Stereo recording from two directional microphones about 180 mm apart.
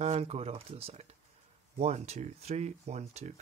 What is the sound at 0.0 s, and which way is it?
Speech, 35° right (ahead or behind).